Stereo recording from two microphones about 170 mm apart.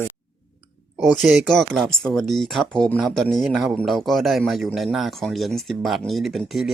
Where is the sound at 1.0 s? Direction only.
Centre (ahead or behind).